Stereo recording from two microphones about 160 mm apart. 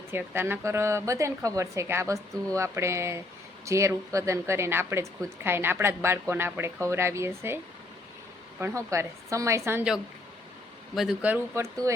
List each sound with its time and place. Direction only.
0.1 s speech: 15° right (ahead or behind)
10.9 s speech: 5° right (ahead or behind); by 11.9 s 20° right (ahead or behind)